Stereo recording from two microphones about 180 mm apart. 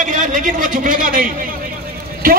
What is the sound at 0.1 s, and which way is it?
A man's voice, 45° right (ahead or behind).